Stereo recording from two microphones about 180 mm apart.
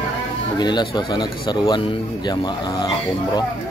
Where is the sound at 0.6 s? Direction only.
25° left (ahead or behind).